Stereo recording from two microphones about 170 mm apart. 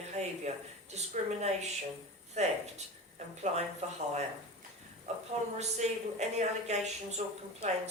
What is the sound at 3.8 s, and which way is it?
Speech, 45° right (ahead or behind).